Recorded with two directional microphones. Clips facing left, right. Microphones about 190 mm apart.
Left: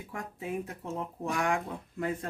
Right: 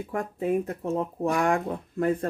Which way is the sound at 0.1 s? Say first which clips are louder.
Right 10 dB; 55° right (ahead or behind).